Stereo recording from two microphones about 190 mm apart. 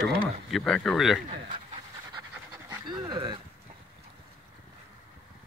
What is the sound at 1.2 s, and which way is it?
Pant, 30° right (ahead or behind).